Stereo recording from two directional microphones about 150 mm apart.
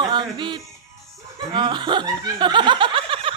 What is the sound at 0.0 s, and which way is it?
Music, 30° right (ahead or behind).